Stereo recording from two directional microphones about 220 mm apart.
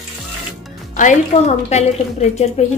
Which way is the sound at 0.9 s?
30° left (ahead or behind).